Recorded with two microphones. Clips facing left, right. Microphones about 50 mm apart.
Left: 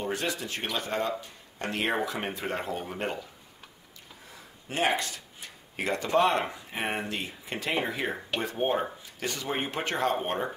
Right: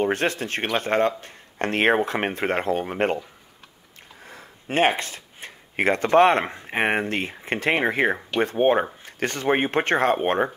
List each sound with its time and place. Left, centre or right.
0.0 s speech: right
4.3 s speech: right